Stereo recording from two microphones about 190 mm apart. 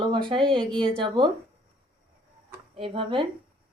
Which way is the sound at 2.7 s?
30° right (ahead or behind).